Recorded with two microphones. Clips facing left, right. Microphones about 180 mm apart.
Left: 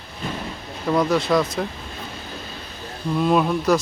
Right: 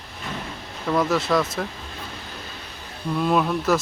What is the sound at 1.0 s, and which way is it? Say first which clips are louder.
Speech: left 2 dB; centre (ahead or behind).